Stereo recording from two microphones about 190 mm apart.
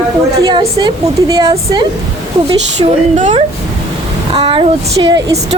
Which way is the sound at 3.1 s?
40° right (ahead or behind).